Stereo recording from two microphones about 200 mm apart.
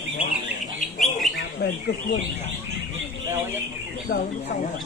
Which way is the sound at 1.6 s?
50° left (ahead or behind).